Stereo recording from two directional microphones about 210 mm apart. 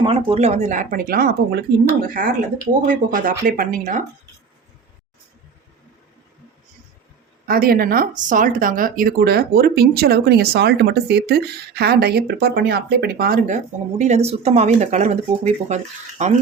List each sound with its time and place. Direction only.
0.0 s speech: 25° right (ahead or behind)
7.4 s speech: 45° right (ahead or behind)
14.0 s speech: 30° right (ahead or behind)